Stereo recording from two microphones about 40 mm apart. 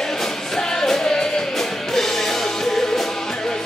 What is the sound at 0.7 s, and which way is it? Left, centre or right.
Music, centre.